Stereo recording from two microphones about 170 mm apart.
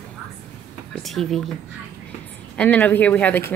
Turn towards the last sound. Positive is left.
turn(degrees=10)  # may be behind; listen again after turning